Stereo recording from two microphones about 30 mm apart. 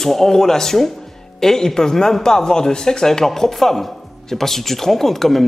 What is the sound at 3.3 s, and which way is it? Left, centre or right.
Speech, centre.